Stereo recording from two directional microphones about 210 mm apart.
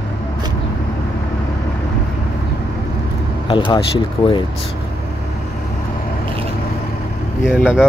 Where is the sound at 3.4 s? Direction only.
25° left (ahead or behind).